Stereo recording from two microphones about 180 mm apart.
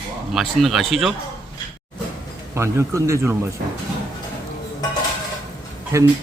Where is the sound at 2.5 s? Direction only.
15° right (ahead or behind).